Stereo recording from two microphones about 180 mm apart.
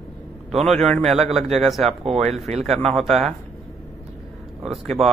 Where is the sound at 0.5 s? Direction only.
Centre (ahead or behind).